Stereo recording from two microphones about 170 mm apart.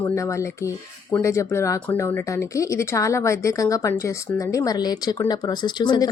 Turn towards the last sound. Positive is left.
turn(degrees=25)  # may be behind; listen again after turning